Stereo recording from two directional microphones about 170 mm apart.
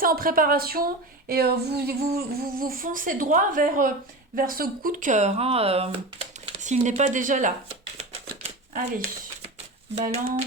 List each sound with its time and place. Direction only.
0.0 s a woman's voice: 55° right (ahead or behind)
1.3 s a sound: 65° right (ahead or behind)
2.1 s speech: 60° right (ahead or behind)
9.9 s speech: 40° right (ahead or behind)